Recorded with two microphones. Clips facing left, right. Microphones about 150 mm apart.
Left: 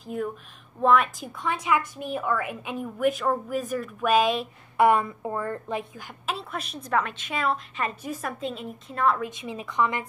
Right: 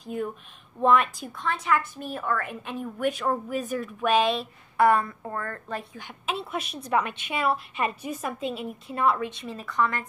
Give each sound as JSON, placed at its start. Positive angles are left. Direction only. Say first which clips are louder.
{"t": 0.0, "sound": "a woman's voice", "louder": "left 1 dB", "side_deg": 0}
{"t": 5.9, "sound": "a woman's voice", "louder": "right 1 dB", "side_deg": 0}
{"t": 9.5, "sound": "a woman's voice", "louder": "left 1 dB", "side_deg": 15}